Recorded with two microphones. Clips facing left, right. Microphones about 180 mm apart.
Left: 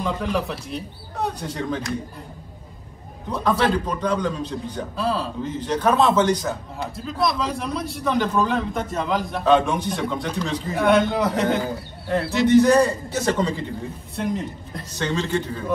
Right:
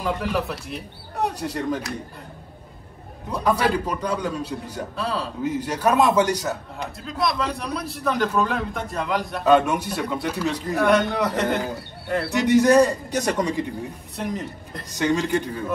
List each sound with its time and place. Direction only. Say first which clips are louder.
0.0 s a man's voice: even; 5° right (ahead or behind)
3.3 s a man's voice: left 1 dB; 5° right (ahead or behind)
7.1 s a man's voice: left 1 dB; centre (ahead or behind)
12.4 s a man's voice: even; 15° right (ahead or behind)
15.0 s a man's voice: right 2 dB; 15° right (ahead or behind)